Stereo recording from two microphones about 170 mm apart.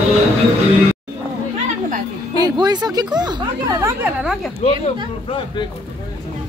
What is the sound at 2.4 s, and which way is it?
Speech, 25° right (ahead or behind).